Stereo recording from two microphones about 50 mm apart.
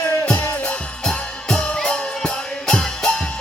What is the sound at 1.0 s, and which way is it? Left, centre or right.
Music, centre.